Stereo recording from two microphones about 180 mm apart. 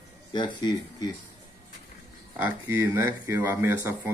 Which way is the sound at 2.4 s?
10° right (ahead or behind).